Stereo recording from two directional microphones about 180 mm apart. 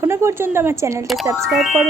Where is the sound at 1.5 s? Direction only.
Centre (ahead or behind).